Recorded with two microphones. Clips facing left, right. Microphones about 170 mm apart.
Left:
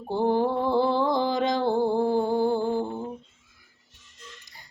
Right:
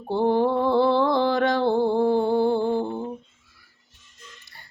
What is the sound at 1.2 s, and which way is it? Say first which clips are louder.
Music: right 3 dB; 65° right (ahead or behind).